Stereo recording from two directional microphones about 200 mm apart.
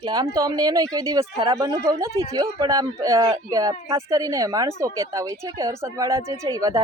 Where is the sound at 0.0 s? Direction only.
20° right (ahead or behind).